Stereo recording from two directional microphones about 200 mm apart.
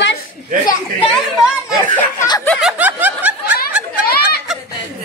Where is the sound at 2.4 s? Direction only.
5° left (ahead or behind).